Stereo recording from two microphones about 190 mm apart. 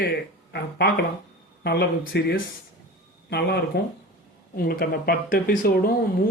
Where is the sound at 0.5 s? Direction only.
60° left (ahead or behind).